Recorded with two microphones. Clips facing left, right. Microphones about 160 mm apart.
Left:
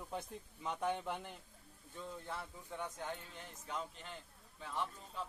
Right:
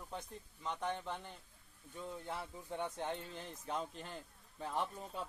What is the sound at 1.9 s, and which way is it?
Speech, 15° right (ahead or behind).